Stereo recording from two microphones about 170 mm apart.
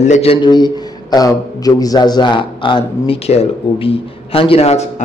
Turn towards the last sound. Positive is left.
turn(degrees=40)  # may be behind; listen again after turning